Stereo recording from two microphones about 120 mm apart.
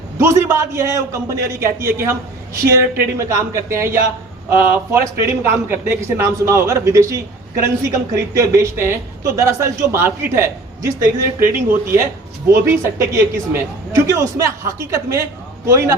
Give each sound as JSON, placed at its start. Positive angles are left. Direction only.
{"t": 0.2, "sound": "speech", "side_deg": -20}
{"t": 13.5, "sound": "speech", "side_deg": -25}